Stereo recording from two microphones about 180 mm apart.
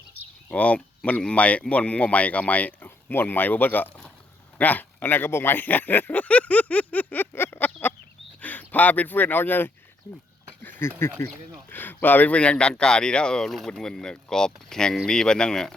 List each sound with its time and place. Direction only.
0.4 s a man's voice: 10° left (ahead or behind)